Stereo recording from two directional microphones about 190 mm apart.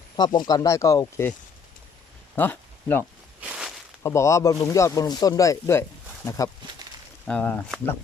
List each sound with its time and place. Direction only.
0.2 s speech: 20° left (ahead or behind)
2.3 s speech: 10° left (ahead or behind)
3.4 s a sound: 5° right (ahead or behind)
4.0 s speech: 15° left (ahead or behind)
7.3 s speech: 5° left (ahead or behind)